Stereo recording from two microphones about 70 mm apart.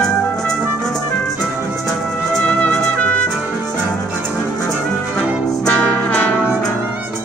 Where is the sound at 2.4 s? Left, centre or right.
Centre.